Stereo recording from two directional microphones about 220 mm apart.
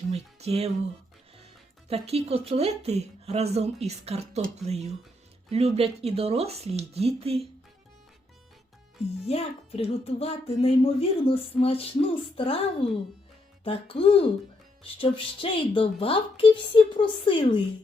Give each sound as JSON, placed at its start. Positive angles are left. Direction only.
{"t": 0.1, "sound": "speech", "side_deg": -30}
{"t": 2.0, "sound": "speech", "side_deg": -30}
{"t": 9.2, "sound": "a child's voice", "side_deg": 25}